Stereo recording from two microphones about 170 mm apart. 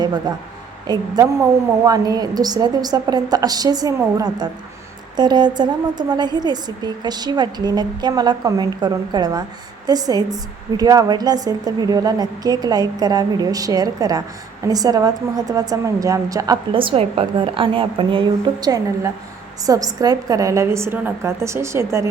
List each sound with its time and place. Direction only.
0.0 s a woman's voice: 25° right (ahead or behind)